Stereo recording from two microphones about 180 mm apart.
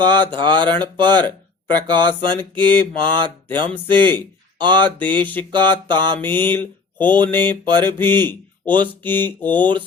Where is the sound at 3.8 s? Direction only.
25° right (ahead or behind).